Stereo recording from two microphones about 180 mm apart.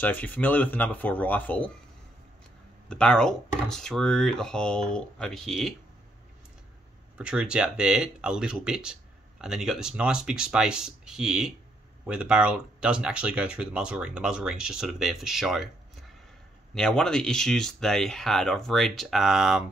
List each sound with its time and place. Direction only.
0.0 s speech: 10° left (ahead or behind)
2.9 s speech: 5° left (ahead or behind)
7.2 s speech: 5° right (ahead or behind)